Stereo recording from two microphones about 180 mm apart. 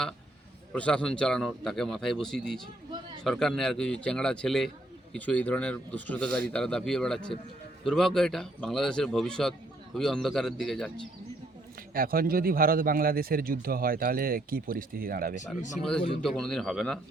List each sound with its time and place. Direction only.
0.7 s speech: 5° left (ahead or behind)
11.9 s a man's voice: 55° right (ahead or behind)
15.8 s speech: 5° left (ahead or behind)